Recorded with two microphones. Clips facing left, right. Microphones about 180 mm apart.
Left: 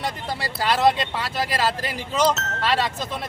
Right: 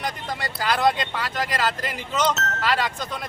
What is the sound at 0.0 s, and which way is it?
Speech, 30° left (ahead or behind).